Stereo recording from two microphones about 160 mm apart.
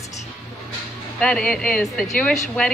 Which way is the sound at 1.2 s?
5° left (ahead or behind).